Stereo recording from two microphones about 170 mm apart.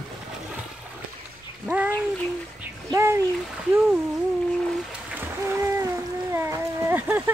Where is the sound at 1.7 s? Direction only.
10° right (ahead or behind).